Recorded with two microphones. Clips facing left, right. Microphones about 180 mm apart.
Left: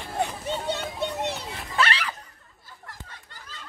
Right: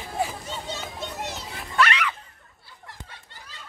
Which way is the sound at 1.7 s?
30° left (ahead or behind).